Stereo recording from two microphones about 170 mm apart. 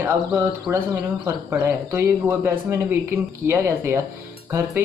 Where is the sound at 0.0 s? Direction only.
10° right (ahead or behind).